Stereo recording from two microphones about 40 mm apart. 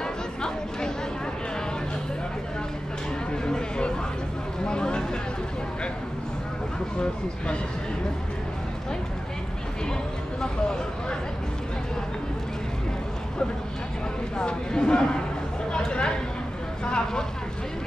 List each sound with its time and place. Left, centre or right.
0.0 s chatter: centre
3.3 s a sound: left
10.4 s speech: centre
14.3 s speech: left